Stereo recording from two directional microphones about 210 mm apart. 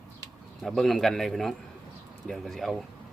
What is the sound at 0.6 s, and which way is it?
A man's voice, centre (ahead or behind).